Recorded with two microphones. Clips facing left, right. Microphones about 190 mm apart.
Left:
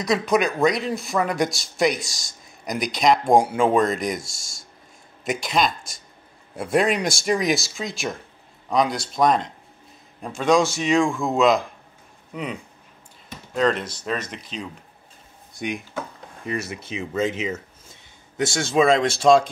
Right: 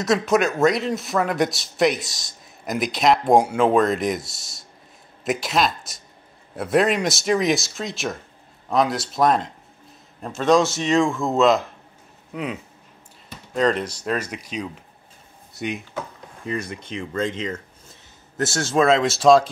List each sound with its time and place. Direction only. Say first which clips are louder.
0.0 s speech: right 1 dB; centre (ahead or behind)
5.2 s speech: right 1 dB; centre (ahead or behind)
13.6 s speech: right 1 dB; centre (ahead or behind)
13.8 s speech: right 3 dB; 10° right (ahead or behind)